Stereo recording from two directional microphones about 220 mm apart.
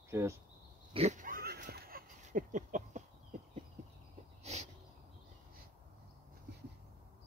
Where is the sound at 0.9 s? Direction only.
30° right (ahead or behind).